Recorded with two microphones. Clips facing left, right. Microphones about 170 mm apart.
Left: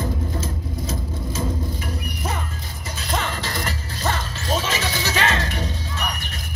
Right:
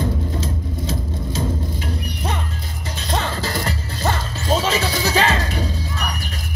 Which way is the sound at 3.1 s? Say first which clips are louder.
Right 3 dB; 30° right (ahead or behind).